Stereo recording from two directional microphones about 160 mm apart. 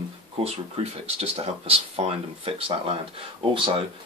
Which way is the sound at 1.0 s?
40° right (ahead or behind).